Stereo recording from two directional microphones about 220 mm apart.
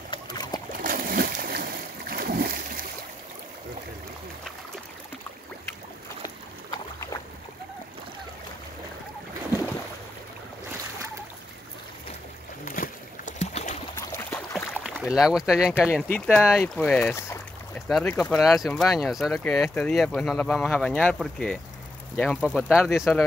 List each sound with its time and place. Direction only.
0.1 s splash: 20° left (ahead or behind)
0.7 s splash: 40° right (ahead or behind)
12.6 s boat: 40° left (ahead or behind)
13.9 s boat: 10° left (ahead or behind)
14.8 s speech: 5° right (ahead or behind)
15.9 s speech: 10° left (ahead or behind)